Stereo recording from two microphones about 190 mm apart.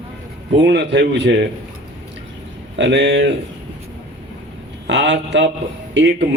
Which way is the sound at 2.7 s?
65° right (ahead or behind).